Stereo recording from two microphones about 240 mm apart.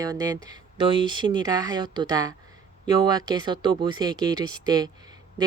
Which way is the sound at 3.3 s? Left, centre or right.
Centre.